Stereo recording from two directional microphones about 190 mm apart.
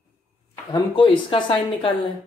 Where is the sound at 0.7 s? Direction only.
25° left (ahead or behind).